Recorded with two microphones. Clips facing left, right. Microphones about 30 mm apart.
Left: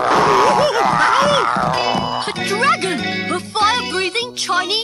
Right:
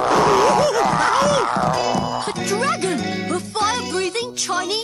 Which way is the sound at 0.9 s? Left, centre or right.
Left.